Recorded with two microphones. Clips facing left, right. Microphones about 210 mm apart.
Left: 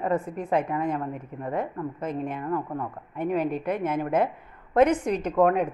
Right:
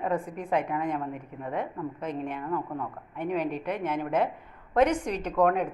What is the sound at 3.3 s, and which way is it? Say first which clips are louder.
Speech: left 3 dB; 50° left (ahead or behind).